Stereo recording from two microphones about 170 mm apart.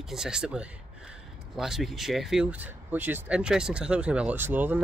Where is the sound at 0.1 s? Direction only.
5° right (ahead or behind).